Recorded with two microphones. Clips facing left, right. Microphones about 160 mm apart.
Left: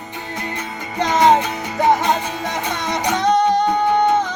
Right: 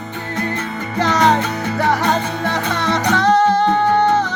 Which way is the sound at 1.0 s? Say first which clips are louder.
Left 1 dB; 20° left (ahead or behind).